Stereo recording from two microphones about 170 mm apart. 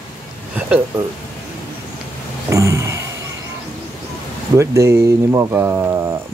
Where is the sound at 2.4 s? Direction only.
15° right (ahead or behind).